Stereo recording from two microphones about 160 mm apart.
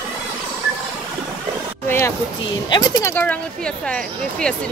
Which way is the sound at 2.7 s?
25° left (ahead or behind).